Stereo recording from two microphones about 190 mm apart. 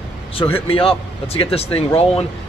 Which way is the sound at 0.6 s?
30° left (ahead or behind).